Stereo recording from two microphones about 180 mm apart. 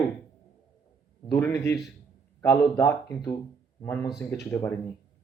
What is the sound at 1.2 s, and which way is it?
Speech, 15° left (ahead or behind).